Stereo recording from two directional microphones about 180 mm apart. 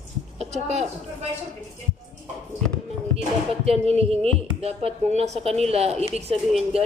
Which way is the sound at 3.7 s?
35° right (ahead or behind).